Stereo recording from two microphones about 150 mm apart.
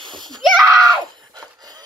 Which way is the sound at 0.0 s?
30° right (ahead or behind).